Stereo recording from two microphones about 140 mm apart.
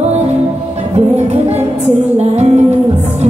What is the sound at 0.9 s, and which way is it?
Music, 50° right (ahead or behind).